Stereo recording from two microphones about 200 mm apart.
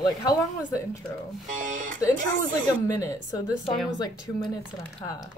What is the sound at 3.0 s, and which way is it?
Speech, 15° left (ahead or behind).